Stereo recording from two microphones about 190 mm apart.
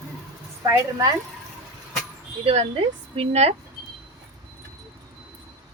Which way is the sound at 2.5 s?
30° right (ahead or behind).